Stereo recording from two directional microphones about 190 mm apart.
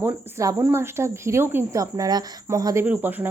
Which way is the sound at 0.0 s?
15° right (ahead or behind).